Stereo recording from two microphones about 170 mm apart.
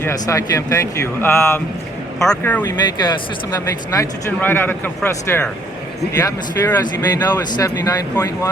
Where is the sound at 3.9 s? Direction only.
15° left (ahead or behind).